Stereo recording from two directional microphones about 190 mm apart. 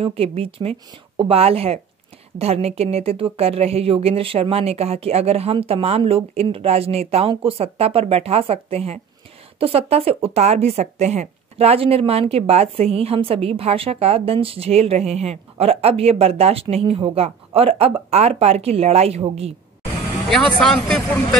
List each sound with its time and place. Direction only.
0.0 s speech: 30° right (ahead or behind)
20.2 s speech: 5° left (ahead or behind)